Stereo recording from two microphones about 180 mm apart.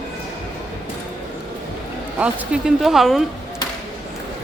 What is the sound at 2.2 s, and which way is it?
Speech, 5° right (ahead or behind).